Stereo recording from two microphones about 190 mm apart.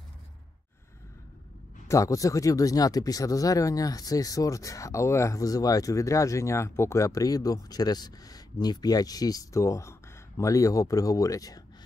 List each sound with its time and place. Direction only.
1.9 s speech: 15° left (ahead or behind)